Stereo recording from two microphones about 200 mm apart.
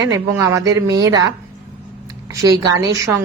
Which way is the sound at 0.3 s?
15° right (ahead or behind).